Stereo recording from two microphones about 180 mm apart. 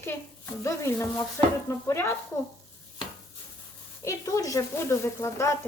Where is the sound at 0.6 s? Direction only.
15° left (ahead or behind).